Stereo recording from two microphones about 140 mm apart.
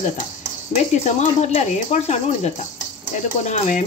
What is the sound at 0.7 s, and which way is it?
Speech, 55° left (ahead or behind).